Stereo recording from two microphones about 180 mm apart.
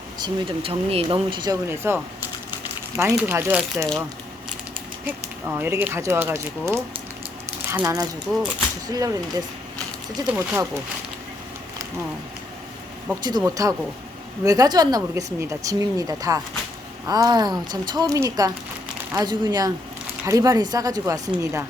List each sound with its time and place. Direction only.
0.2 s speech: 30° right (ahead or behind); by 3.8 s 10° right (ahead or behind)
5.0 s speech: 10° right (ahead or behind)
10.2 s speech: 10° right (ahead or behind)
13.2 s speech: 20° right (ahead or behind)